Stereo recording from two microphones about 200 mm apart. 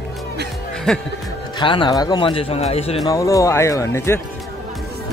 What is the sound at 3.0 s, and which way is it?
Speech, 15° left (ahead or behind).